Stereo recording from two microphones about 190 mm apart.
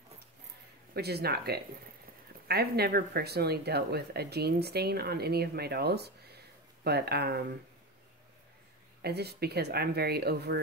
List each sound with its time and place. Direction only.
0.9 s speech: 55° right (ahead or behind)
9.0 s speech: 60° right (ahead or behind)